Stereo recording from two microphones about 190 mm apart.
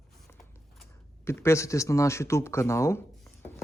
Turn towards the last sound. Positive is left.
turn(degrees=15)  # may be behind; listen again after turning